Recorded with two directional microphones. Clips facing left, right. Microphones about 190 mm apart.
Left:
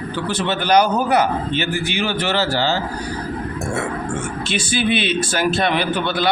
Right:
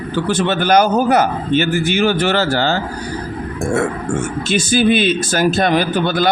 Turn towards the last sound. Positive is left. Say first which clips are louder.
# right 4 dB
turn(degrees=-45)  # may be behind; listen again after turning